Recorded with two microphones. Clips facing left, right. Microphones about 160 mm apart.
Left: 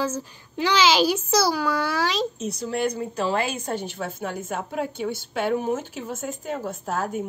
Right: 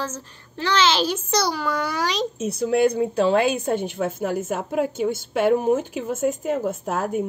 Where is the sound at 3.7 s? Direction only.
50° right (ahead or behind).